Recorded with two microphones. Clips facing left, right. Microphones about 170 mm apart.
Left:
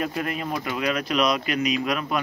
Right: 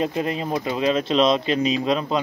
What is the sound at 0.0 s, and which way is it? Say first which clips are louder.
Speech: right 4 dB; 25° right (ahead or behind).